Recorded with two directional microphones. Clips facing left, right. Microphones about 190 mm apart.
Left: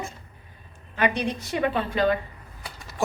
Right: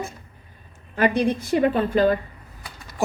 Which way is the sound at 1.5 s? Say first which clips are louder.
Right 5 dB; 45° right (ahead or behind).